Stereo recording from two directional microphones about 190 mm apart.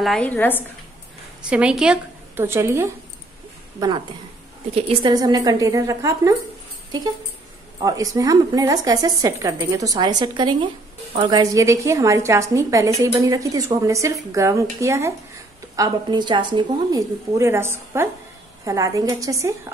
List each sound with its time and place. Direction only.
0.0 s a woman's voice: 5° left (ahead or behind)
1.5 s a woman's voice: 5° right (ahead or behind)
4.7 s a woman's voice: 30° right (ahead or behind)
5.1 s a woman's voice: 20° right (ahead or behind)
7.8 s a woman's voice: 20° right (ahead or behind)